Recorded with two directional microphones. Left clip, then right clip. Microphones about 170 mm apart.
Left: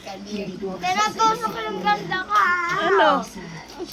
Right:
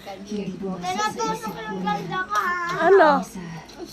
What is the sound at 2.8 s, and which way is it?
Speech, 30° right (ahead or behind).